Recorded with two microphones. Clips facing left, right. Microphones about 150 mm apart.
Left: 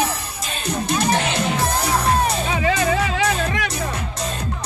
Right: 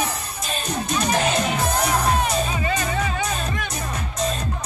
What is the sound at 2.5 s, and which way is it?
Music, 90° left.